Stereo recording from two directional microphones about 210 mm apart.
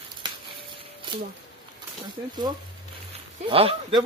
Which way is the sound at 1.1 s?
25° right (ahead or behind).